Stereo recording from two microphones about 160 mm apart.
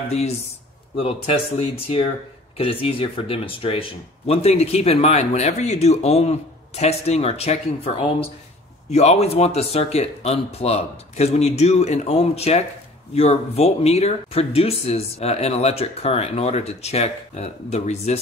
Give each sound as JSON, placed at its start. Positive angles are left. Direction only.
{"t": 0.9, "sound": "speech", "side_deg": 40}